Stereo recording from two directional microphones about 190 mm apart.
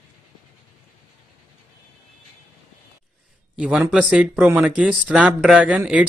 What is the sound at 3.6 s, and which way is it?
Speech, 5° right (ahead or behind).